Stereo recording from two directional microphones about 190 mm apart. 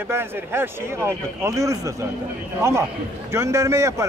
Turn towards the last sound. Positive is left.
turn(degrees=-15)  # may be behind; listen again after turning